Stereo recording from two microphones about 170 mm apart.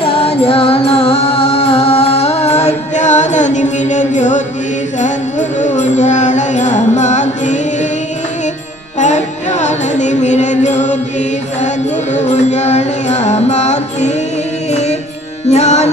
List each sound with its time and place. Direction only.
0.0 s music: 35° left (ahead or behind)
9.0 s music: 45° left (ahead or behind)